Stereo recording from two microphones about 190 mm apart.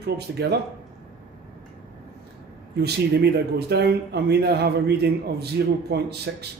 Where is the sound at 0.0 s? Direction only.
60° right (ahead or behind).